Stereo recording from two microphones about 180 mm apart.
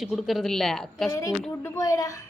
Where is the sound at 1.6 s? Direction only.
15° left (ahead or behind).